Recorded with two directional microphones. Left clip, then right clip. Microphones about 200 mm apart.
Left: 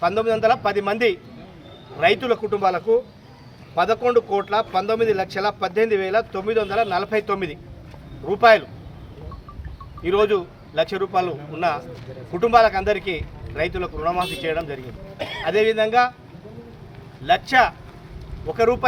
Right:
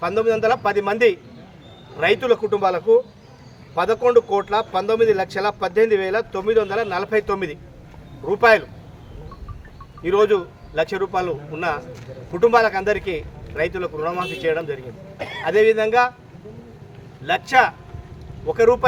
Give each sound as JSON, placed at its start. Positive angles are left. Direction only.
{"t": 0.0, "sound": "speech", "side_deg": -5}
{"t": 10.0, "sound": "speech", "side_deg": -10}
{"t": 15.2, "sound": "a man's voice", "side_deg": 15}
{"t": 15.4, "sound": "speech", "side_deg": -10}
{"t": 17.2, "sound": "speech", "side_deg": -10}